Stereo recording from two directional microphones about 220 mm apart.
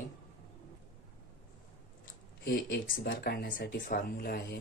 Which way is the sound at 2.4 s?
45° left (ahead or behind).